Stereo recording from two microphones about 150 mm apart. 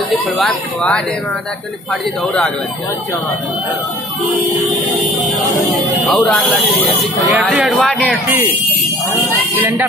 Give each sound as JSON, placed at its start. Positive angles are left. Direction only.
{"t": 0.4, "sound": "speech", "side_deg": 5}
{"t": 6.1, "sound": "speech", "side_deg": 0}
{"t": 9.6, "sound": "speech", "side_deg": -15}